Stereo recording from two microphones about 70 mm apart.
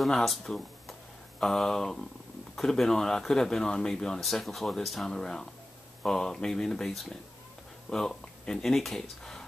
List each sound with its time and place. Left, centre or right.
0.0 s speech: centre